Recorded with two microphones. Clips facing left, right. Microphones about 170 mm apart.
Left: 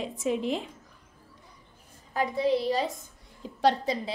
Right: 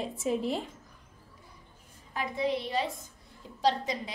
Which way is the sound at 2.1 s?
35° left (ahead or behind).